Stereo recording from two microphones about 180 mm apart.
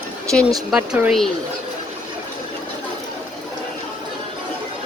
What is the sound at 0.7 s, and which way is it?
Speech, 5° right (ahead or behind).